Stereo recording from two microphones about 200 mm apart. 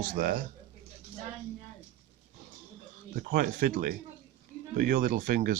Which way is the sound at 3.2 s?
45° right (ahead or behind).